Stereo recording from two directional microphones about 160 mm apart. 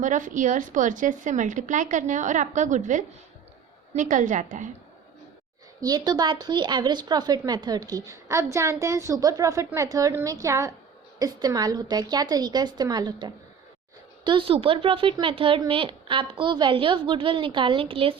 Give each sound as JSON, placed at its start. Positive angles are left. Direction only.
{"t": 0.0, "sound": "a woman's voice", "side_deg": -55}
{"t": 5.8, "sound": "speech", "side_deg": -25}